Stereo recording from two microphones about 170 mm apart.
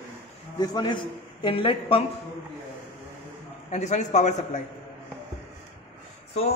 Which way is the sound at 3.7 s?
45° left (ahead or behind).